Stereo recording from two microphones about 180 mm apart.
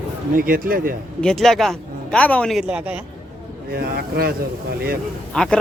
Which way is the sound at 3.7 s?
60° right (ahead or behind).